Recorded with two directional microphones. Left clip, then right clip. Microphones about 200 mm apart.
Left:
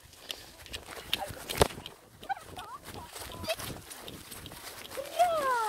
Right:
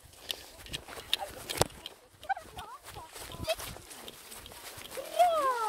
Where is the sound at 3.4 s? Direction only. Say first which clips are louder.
Right 1 dB; centre (ahead or behind).